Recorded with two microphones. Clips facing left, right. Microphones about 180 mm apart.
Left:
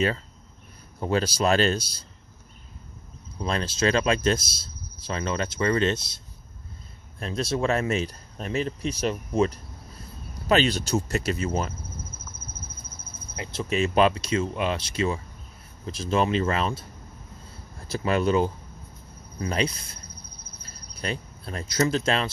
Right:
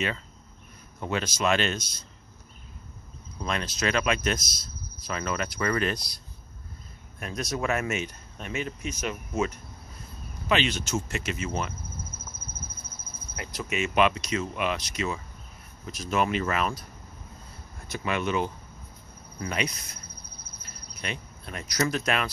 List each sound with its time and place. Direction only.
0.9 s speech: 35° left (ahead or behind)
3.4 s speech: 30° left (ahead or behind)
13.4 s speech: 25° left (ahead or behind)
17.8 s speech: 35° left (ahead or behind)